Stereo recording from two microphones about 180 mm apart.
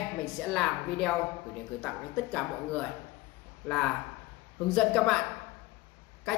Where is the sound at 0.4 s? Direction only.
5° left (ahead or behind).